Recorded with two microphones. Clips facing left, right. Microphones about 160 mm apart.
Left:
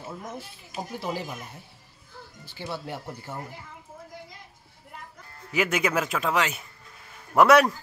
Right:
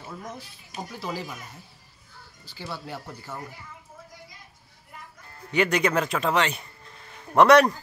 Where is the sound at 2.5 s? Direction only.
20° left (ahead or behind).